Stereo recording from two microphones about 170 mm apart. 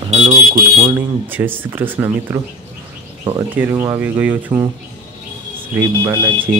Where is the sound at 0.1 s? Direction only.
40° right (ahead or behind).